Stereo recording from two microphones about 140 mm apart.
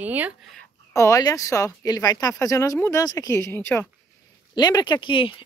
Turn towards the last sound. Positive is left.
turn(degrees=35)  # may be behind; listen again after turning